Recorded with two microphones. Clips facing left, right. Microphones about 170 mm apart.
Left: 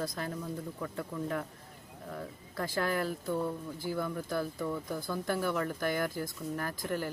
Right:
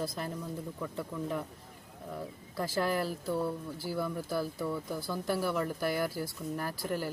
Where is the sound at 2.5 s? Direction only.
5° right (ahead or behind).